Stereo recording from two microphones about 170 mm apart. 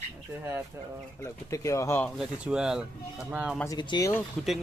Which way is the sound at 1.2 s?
20° left (ahead or behind).